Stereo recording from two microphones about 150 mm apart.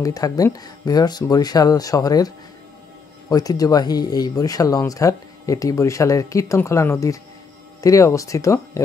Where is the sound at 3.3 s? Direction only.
25° left (ahead or behind).